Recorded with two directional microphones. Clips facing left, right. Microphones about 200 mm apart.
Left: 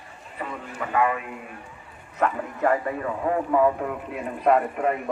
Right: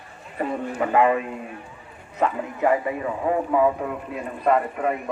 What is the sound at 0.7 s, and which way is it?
Speech, 30° right (ahead or behind).